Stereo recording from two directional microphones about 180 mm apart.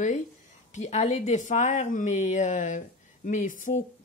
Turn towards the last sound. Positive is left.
turn(degrees=45)  # may be behind; listen again after turning